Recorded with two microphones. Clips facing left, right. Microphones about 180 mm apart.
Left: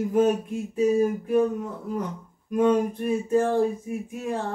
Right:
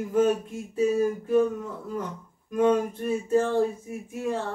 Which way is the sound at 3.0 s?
15° left (ahead or behind).